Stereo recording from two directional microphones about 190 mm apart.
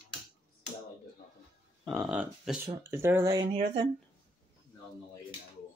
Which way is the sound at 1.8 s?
Centre (ahead or behind).